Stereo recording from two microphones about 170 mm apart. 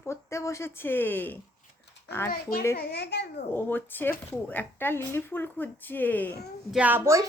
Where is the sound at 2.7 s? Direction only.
75° left (ahead or behind).